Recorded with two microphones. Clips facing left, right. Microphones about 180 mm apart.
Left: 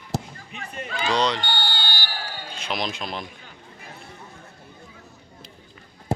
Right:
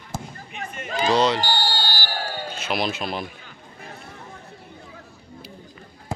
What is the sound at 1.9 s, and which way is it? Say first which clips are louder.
Basketball bounce: right 5 dB; 45° right (ahead or behind).